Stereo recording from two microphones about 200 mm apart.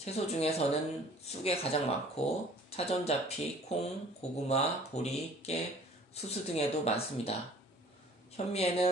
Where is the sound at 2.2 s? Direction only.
30° left (ahead or behind).